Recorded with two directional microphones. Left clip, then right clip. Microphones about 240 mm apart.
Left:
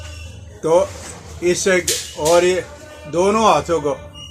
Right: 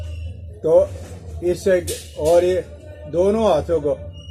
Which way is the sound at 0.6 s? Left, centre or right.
Centre.